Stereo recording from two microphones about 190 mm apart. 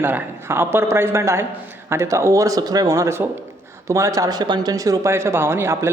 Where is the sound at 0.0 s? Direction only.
10° right (ahead or behind).